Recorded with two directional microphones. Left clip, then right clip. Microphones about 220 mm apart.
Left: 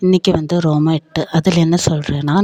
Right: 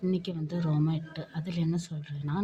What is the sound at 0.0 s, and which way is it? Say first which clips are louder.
Speech: left 19 dB; 50° left (ahead or behind).